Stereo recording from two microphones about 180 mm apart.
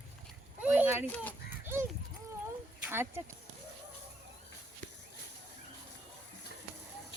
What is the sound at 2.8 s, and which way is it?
Speech, 15° right (ahead or behind).